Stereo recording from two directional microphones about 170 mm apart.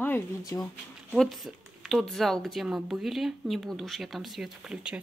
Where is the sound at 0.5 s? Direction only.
15° left (ahead or behind).